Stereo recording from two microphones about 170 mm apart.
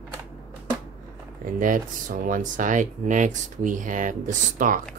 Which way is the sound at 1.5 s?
55° right (ahead or behind).